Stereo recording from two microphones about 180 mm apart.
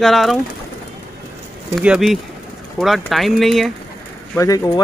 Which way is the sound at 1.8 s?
Centre (ahead or behind).